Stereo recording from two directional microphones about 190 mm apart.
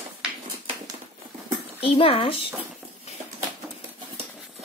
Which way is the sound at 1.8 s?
30° left (ahead or behind).